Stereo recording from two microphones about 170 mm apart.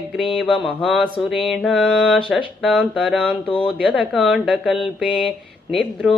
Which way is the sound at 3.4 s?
10° left (ahead or behind).